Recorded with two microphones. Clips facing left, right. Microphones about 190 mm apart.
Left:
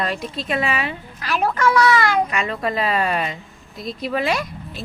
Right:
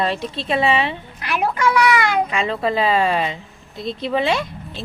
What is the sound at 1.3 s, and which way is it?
A child's voice, 10° right (ahead or behind).